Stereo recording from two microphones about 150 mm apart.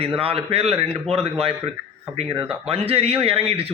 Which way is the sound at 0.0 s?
40° right (ahead or behind).